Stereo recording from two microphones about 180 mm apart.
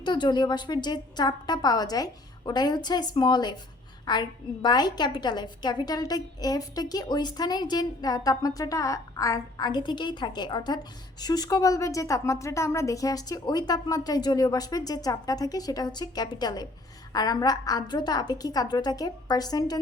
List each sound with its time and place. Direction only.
0.0 s a woman's voice: 25° left (ahead or behind)